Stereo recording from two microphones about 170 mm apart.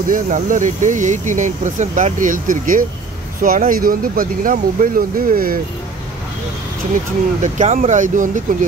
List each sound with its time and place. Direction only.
0.1 s speech: 50° right (ahead or behind)
7.4 s speech: 45° right (ahead or behind)